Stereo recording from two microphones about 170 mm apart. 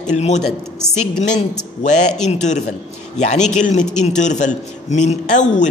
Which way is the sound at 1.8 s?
45° left (ahead or behind).